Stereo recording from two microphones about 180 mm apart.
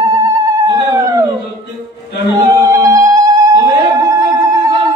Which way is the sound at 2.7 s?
15° right (ahead or behind).